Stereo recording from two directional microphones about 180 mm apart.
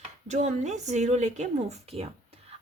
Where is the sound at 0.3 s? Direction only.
40° right (ahead or behind).